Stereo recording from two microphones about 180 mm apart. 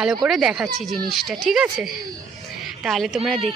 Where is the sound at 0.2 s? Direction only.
5° right (ahead or behind).